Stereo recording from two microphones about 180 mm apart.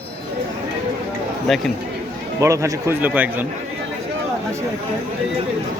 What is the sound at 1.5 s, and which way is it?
Speech, centre (ahead or behind).